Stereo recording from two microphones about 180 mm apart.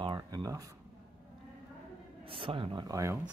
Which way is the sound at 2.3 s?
30° right (ahead or behind).